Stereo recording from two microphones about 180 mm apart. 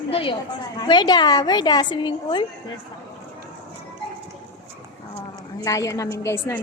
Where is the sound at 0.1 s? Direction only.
30° left (ahead or behind).